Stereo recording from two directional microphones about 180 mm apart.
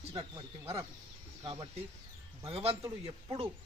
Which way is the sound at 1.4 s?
30° right (ahead or behind).